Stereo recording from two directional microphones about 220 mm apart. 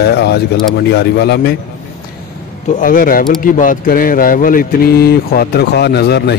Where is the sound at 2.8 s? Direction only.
40° left (ahead or behind).